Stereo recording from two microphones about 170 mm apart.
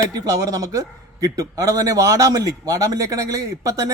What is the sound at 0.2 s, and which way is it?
A man's voice, 20° right (ahead or behind).